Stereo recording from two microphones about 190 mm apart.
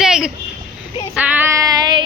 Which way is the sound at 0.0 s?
5° right (ahead or behind).